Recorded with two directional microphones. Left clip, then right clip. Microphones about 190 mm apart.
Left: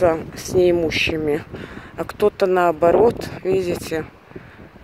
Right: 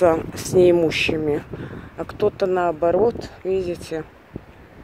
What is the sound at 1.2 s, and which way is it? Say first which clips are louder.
Speech: left 1 dB; centre (ahead or behind).